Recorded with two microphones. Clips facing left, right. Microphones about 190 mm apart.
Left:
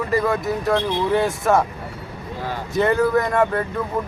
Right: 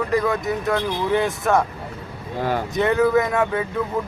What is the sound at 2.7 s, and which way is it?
Speech, centre (ahead or behind).